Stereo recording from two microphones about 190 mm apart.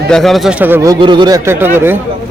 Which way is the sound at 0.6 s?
15° right (ahead or behind).